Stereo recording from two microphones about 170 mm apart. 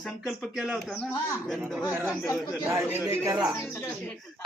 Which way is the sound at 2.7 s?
15° right (ahead or behind).